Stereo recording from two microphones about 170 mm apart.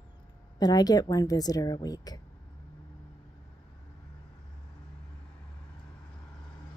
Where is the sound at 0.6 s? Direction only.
25° left (ahead or behind).